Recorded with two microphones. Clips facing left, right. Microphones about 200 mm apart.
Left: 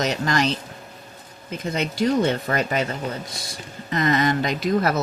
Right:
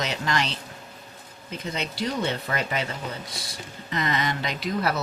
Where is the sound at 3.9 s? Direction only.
45° left (ahead or behind).